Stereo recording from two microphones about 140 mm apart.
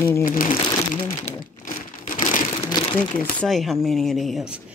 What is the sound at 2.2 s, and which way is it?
Crumpling, 65° left (ahead or behind).